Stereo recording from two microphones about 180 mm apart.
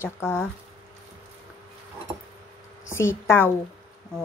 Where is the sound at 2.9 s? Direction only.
15° left (ahead or behind).